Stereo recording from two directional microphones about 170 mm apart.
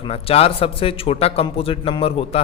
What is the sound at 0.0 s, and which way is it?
A man's voice, 35° left (ahead or behind).